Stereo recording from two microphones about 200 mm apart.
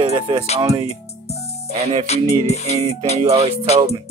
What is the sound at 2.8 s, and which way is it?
Speech, 30° right (ahead or behind).